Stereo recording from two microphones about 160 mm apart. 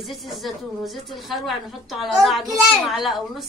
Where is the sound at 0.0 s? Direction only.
Centre (ahead or behind).